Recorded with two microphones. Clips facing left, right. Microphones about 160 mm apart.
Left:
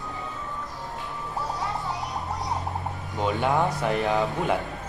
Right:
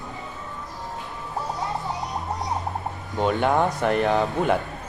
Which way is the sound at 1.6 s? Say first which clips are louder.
Right 2 dB; 20° right (ahead or behind).